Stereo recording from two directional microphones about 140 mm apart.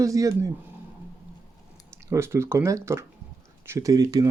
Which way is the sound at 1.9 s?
20° right (ahead or behind).